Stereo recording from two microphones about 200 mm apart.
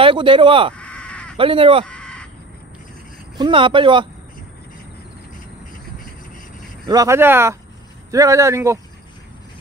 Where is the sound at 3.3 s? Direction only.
25° right (ahead or behind).